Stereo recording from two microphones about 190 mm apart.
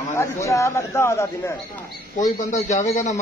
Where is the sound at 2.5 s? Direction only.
40° left (ahead or behind).